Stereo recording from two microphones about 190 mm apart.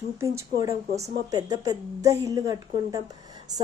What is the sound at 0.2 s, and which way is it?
A woman's voice, 15° right (ahead or behind).